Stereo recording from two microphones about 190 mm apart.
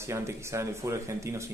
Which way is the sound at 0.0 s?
15° right (ahead or behind).